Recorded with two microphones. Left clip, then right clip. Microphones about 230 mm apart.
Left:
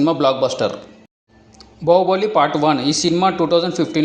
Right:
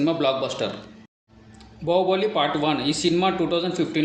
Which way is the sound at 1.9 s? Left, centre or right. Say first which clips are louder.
Left 7 dB; left.